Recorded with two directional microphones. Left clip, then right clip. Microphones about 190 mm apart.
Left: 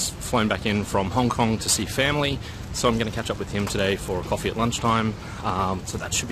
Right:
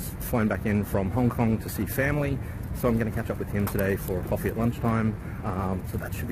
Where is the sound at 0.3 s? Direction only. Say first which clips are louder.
Left 4 dB; 20° left (ahead or behind).